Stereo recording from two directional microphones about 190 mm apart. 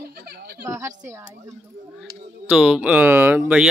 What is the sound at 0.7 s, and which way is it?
Speech, 15° right (ahead or behind).